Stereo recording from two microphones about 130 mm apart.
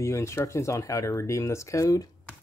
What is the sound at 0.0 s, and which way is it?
Speech, 20° left (ahead or behind).